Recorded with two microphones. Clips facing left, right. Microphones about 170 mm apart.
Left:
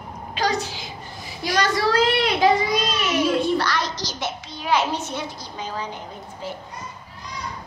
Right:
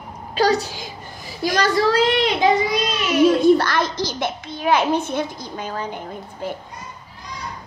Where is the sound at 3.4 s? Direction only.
50° right (ahead or behind).